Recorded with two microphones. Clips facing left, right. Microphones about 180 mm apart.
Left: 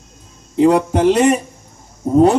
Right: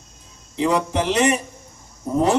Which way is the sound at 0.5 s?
55° left (ahead or behind).